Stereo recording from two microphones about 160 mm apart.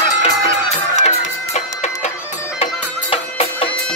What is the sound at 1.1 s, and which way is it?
Music, 45° left (ahead or behind).